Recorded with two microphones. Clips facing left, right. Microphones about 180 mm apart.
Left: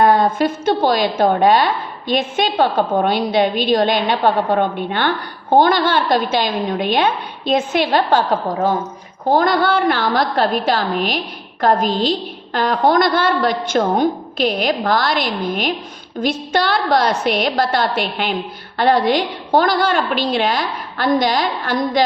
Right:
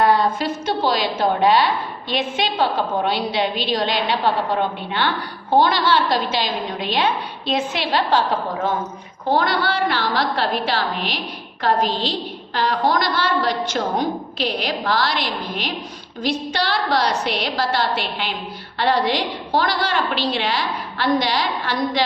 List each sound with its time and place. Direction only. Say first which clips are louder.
0.0 s a woman's voice: left 4 dB; 50° left (ahead or behind)
9.3 s a woman's voice: left 5 dB; 45° left (ahead or behind)